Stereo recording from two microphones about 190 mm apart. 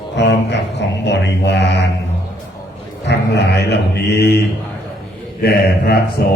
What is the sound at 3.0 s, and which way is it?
Mantra, 65° left (ahead or behind).